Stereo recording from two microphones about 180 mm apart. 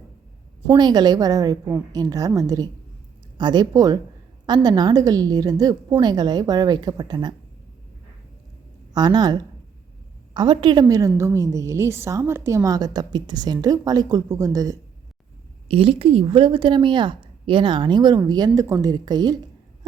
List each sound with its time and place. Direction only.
0.7 s a woman's voice: 25° right (ahead or behind)
8.9 s a woman's voice: 25° right (ahead or behind)
15.7 s a woman's voice: 30° right (ahead or behind)